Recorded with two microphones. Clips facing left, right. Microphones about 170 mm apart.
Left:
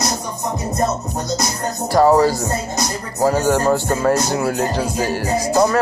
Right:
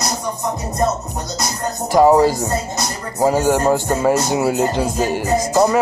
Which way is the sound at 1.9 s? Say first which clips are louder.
Right 1 dB; 15° right (ahead or behind).